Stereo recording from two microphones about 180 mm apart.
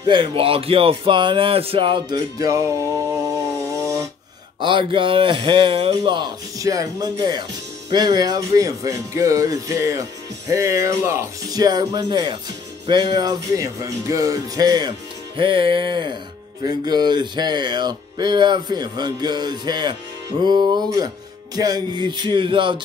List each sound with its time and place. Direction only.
0.0 s speech: 25° right (ahead or behind)
4.6 s speech: 25° right (ahead or behind)